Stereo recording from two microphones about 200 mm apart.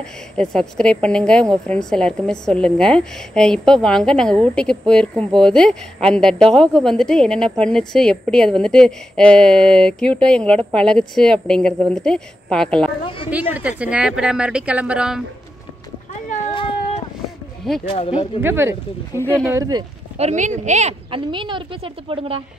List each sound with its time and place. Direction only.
0.0 s a woman's voice: 5° left (ahead or behind)
13.3 s a woman's voice: 5° right (ahead or behind)
16.5 s a sound: 25° left (ahead or behind)
17.8 s speech: 30° left (ahead or behind)
18.4 s speech: 10° right (ahead or behind)
19.1 s speech: 10° left (ahead or behind)
19.5 s a woman's voice: 20° right (ahead or behind)
20.2 s a woman's voice: 35° right (ahead or behind)